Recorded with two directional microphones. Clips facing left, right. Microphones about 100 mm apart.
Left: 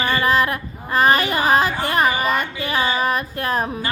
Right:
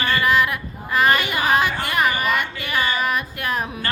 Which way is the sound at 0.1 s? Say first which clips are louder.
Even; 35° left (ahead or behind).